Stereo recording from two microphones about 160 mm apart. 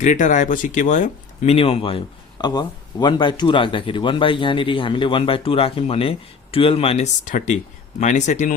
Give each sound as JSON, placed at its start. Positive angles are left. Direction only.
{"t": 0.0, "sound": "speech", "side_deg": 50}
{"t": 1.5, "sound": "speech", "side_deg": 35}
{"t": 7.3, "sound": "speech", "side_deg": 50}